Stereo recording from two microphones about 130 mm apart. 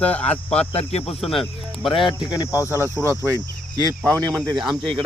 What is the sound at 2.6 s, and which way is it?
Speech, 20° left (ahead or behind).